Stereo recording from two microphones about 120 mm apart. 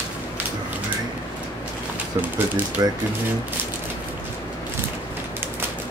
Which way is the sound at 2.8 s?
30° right (ahead or behind).